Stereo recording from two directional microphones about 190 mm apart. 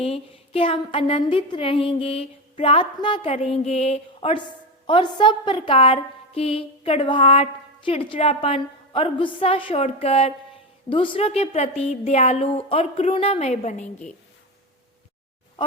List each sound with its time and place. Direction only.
0.0 s a woman's voice: 30° left (ahead or behind)